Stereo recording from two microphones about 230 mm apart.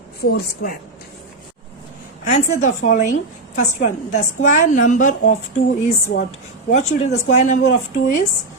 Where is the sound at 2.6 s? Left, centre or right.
Left.